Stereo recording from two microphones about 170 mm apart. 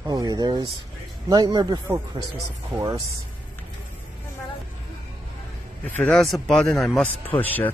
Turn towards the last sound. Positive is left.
turn(degrees=10)  # may be behind; listen again after turning